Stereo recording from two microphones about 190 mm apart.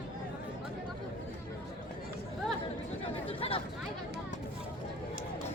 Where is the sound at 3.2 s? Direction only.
30° left (ahead or behind).